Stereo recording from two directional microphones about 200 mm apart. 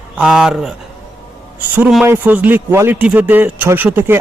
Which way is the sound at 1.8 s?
Centre (ahead or behind).